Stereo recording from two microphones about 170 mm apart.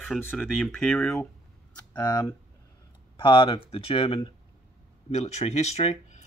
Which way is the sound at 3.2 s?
30° left (ahead or behind).